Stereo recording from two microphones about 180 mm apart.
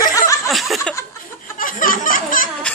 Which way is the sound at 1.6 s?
50° left (ahead or behind).